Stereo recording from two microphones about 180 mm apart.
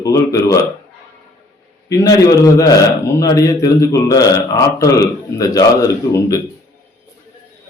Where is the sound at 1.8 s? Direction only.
20° left (ahead or behind).